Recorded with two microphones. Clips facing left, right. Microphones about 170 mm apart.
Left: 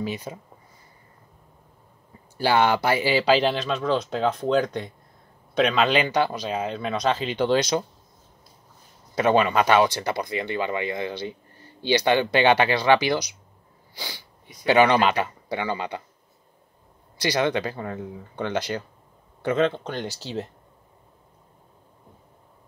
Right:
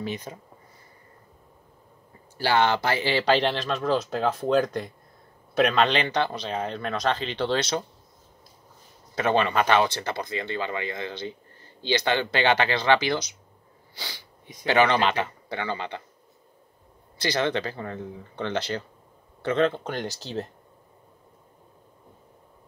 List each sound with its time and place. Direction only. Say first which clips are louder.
2.3 s a man's voice: left 2 dB; 15° left (ahead or behind); by 5.9 s 5° right (ahead or behind)
5.9 s speech: left 3 dB; 10° left (ahead or behind)
9.2 s speech: left 3 dB; 15° left (ahead or behind)
14.7 s speech: left 3 dB; 15° left (ahead or behind)
17.4 s speech: left 2 dB; 15° left (ahead or behind)